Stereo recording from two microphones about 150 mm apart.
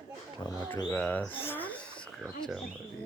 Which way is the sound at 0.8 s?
10° left (ahead or behind).